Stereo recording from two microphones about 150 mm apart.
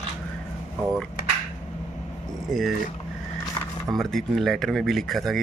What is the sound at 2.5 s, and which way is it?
Speech, centre (ahead or behind).